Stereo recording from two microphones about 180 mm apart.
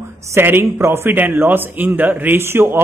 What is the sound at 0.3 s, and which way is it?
A man's voice, 10° right (ahead or behind).